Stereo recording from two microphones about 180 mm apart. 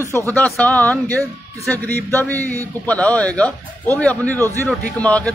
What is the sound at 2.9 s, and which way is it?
Speech, 10° left (ahead or behind).